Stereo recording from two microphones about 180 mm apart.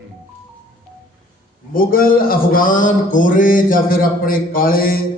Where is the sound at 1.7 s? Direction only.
55° left (ahead or behind).